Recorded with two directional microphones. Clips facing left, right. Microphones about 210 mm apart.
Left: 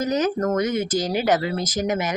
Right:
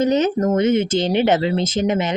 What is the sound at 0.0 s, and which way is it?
Speech, 25° right (ahead or behind).